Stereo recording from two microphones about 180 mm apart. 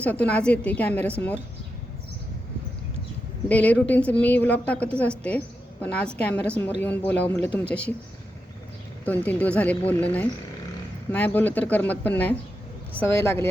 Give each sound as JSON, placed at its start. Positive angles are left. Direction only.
{"t": 0.0, "sound": "a woman's voice", "side_deg": 10}
{"t": 3.5, "sound": "a woman's voice", "side_deg": 10}
{"t": 9.0, "sound": "a woman's voice", "side_deg": 10}